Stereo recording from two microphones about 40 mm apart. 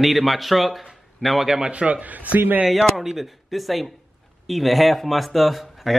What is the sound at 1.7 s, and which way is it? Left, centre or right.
Speech, right.